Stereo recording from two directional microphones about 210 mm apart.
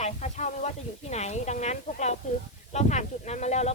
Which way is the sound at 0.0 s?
35° left (ahead or behind).